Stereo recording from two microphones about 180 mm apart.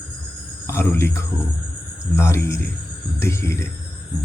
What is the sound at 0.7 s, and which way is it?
Speech, 15° left (ahead or behind).